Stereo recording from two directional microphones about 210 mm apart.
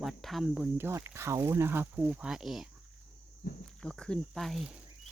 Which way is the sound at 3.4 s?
50° left (ahead or behind).